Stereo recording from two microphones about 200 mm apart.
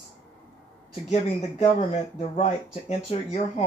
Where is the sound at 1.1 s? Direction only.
35° left (ahead or behind).